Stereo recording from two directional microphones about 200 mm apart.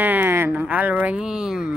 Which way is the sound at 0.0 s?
10° right (ahead or behind).